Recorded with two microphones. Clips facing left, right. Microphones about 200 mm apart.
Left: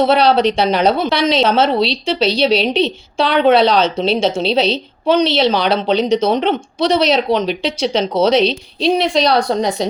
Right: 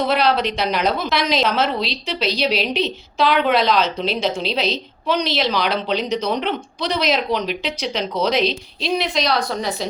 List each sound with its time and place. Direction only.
0.0 s a woman's voice: 30° left (ahead or behind)